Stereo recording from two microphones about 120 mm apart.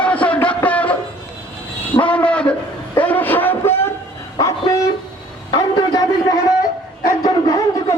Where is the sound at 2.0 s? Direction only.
10° left (ahead or behind); by 6.0 s 35° left (ahead or behind).